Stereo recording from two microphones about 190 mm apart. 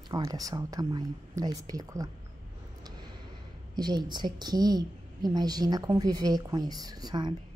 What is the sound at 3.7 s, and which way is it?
A woman's voice, 20° right (ahead or behind).